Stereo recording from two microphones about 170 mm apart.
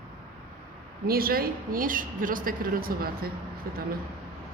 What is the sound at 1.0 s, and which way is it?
A woman's voice, 60° right (ahead or behind).